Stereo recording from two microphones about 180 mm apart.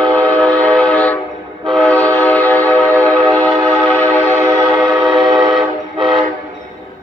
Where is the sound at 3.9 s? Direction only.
10° left (ahead or behind).